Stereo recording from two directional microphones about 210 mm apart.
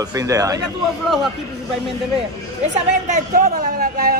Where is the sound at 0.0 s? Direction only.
15° right (ahead or behind).